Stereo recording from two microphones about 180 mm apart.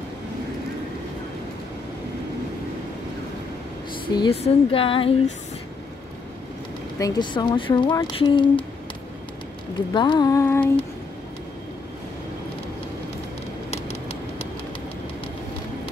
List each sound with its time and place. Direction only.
4.1 s speech: 30° left (ahead or behind)
7.0 s speech: 20° left (ahead or behind)
9.9 s speech: 25° left (ahead or behind)
13.7 s a sound: 35° left (ahead or behind)